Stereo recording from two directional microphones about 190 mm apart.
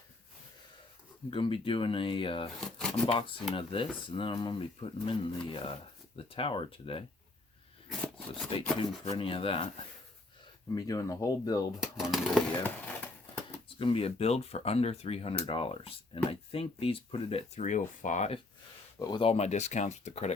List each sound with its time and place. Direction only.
1.3 s speech: 25° left (ahead or behind)
7.9 s scissors: centre (ahead or behind)
8.8 s speech: 30° left (ahead or behind)
10.8 s speech: 20° left (ahead or behind)
11.8 s speech: 5° right (ahead or behind)
12.6 s a sound: 5° left (ahead or behind)
13.7 s speech: 30° left (ahead or behind)
18.9 s speech: 20° left (ahead or behind); by 20.3 s 35° left (ahead or behind)